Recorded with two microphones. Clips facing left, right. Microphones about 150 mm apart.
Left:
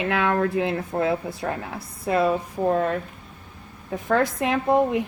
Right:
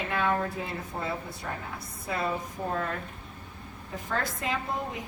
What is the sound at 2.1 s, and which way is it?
Speech, 75° left (ahead or behind).